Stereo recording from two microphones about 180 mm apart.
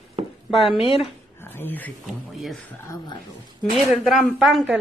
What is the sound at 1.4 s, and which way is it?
Speech, 10° left (ahead or behind).